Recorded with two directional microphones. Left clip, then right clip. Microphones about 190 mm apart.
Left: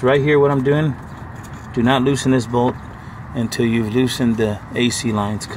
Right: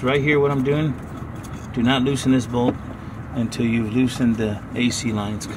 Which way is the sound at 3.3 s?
30° left (ahead or behind).